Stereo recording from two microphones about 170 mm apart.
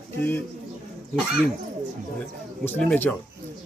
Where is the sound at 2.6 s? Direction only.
10° left (ahead or behind).